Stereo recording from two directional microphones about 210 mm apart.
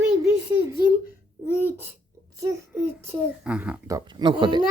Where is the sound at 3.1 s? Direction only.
5° right (ahead or behind).